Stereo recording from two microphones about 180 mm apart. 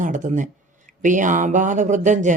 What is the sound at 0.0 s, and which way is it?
Speech, 45° right (ahead or behind).